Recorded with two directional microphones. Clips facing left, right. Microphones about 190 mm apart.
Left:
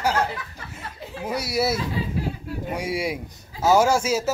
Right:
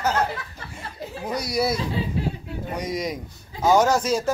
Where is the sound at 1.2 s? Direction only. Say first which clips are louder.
Even; 5° left (ahead or behind).